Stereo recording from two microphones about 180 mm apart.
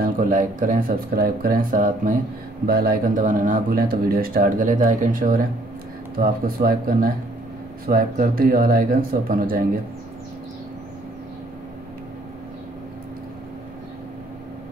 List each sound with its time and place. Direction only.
0.0 s speech: 50° right (ahead or behind)